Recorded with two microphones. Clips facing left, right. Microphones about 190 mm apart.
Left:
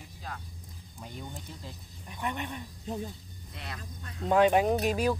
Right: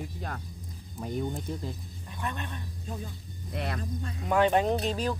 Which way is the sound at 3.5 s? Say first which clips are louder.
Right 10 dB; 60° right (ahead or behind).